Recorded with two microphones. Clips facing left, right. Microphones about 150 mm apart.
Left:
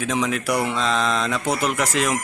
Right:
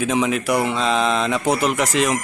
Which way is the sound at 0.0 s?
5° right (ahead or behind).